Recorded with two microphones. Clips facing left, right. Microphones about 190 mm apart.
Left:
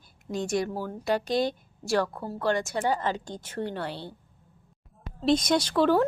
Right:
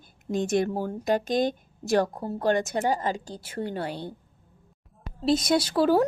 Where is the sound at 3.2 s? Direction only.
10° right (ahead or behind).